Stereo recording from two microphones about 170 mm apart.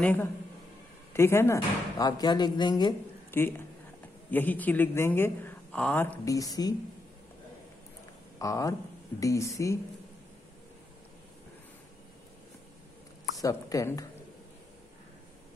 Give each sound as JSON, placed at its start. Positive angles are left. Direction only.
{"t": 0.0, "sound": "a man's voice", "side_deg": 10}
{"t": 3.3, "sound": "a woman's voice", "side_deg": 15}
{"t": 6.2, "sound": "speech", "side_deg": 20}
{"t": 8.4, "sound": "a man's voice", "side_deg": 20}
{"t": 13.4, "sound": "speech", "side_deg": 20}